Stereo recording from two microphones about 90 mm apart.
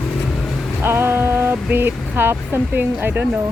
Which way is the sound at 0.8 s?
25° right (ahead or behind).